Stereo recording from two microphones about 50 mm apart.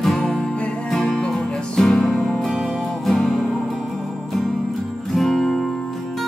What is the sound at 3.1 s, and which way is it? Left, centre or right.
Music, centre.